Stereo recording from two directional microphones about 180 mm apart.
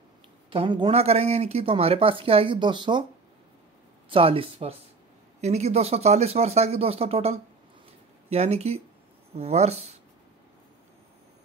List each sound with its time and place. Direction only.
0.5 s speech: 30° right (ahead or behind)
4.1 s speech: 30° right (ahead or behind)